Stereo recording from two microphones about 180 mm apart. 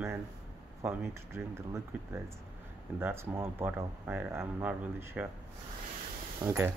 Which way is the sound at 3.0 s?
10° right (ahead or behind).